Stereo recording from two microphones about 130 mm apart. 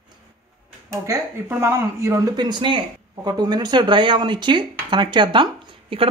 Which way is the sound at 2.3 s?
35° right (ahead or behind).